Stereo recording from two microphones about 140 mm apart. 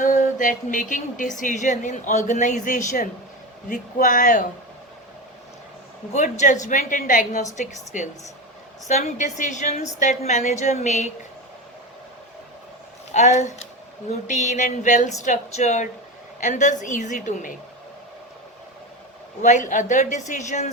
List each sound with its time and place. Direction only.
0.0 s a woman's voice: 65° left (ahead or behind)
6.1 s a woman's voice: 60° left (ahead or behind)
13.1 s a woman's voice: 55° left (ahead or behind)
19.4 s a woman's voice: 60° left (ahead or behind)